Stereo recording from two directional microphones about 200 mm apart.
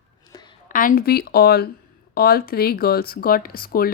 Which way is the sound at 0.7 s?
45° left (ahead or behind).